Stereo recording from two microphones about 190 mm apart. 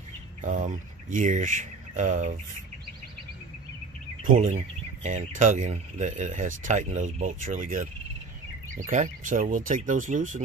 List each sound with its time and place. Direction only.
0.4 s speech: 40° right (ahead or behind)
4.2 s speech: 45° right (ahead or behind)